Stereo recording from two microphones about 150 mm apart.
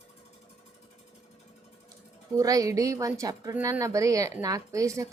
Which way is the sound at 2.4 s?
20° right (ahead or behind).